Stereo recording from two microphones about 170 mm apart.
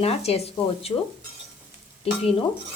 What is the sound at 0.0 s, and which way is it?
Speech, 35° left (ahead or behind).